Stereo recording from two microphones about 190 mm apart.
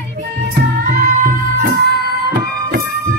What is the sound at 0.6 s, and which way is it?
Music, 45° right (ahead or behind).